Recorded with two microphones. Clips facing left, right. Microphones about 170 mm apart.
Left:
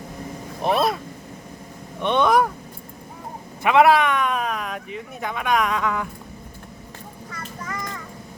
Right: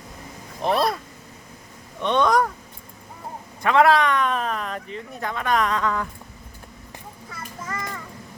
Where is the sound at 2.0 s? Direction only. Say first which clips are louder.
Left 1 dB; 10° left (ahead or behind).